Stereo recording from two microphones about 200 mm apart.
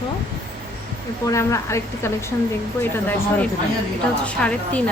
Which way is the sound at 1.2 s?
15° left (ahead or behind).